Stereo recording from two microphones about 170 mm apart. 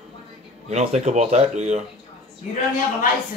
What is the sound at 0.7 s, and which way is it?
Speech, 40° right (ahead or behind).